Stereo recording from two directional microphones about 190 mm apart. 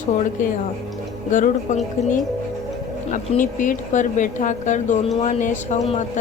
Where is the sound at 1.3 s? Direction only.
40° left (ahead or behind).